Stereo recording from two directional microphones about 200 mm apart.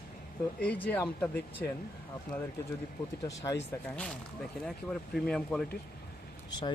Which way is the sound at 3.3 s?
15° left (ahead or behind).